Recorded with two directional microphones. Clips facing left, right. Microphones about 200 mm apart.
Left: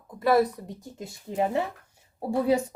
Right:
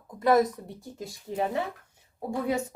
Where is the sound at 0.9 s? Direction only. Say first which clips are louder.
Left 2 dB; 25° left (ahead or behind).